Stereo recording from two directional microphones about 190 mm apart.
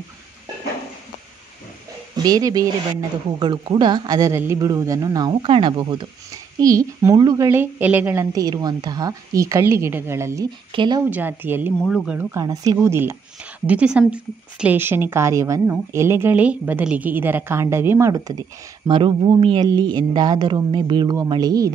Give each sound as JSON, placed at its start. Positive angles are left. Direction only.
{"t": 2.1, "sound": "speech", "side_deg": -20}
{"t": 11.1, "sound": "speech", "side_deg": -10}
{"t": 12.3, "sound": "speech", "side_deg": -15}